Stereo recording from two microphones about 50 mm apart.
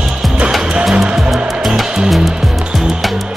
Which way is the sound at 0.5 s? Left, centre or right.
Centre.